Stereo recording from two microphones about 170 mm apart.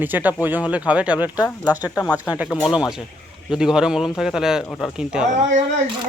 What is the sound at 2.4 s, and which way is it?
A man's voice, 5° right (ahead or behind).